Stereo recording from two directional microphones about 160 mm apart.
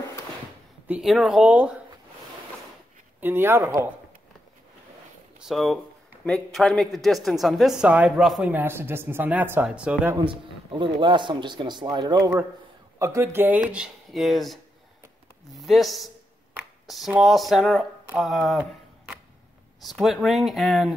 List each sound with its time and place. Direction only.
0.8 s speech: 5° right (ahead or behind)
3.2 s speech: 15° right (ahead or behind)
5.4 s speech: centre (ahead or behind)
10.1 s speech: 30° right (ahead or behind); by 20.9 s centre (ahead or behind)